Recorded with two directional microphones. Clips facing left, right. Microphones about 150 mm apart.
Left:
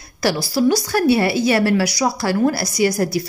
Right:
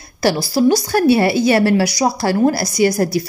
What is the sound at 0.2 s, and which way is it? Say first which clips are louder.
A woman's voice: right 3 dB; 25° right (ahead or behind).